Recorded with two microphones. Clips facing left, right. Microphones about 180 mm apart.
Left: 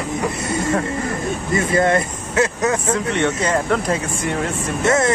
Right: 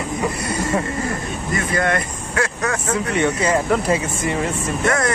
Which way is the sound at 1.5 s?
25° left (ahead or behind).